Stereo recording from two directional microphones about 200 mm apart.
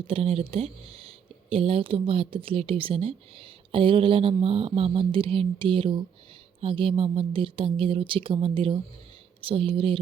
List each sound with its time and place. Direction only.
0.1 s speech: 30° right (ahead or behind)